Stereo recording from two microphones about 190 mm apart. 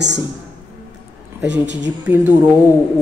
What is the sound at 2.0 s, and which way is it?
Speech, 10° right (ahead or behind).